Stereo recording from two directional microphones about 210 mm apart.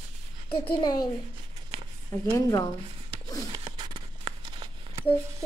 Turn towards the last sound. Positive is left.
turn(degrees=-25)  # may be behind; listen again after turning